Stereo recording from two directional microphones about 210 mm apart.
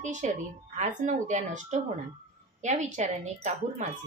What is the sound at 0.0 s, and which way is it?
A woman's voice, 35° right (ahead or behind).